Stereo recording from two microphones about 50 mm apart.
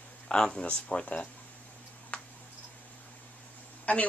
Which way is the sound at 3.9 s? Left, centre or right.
Left.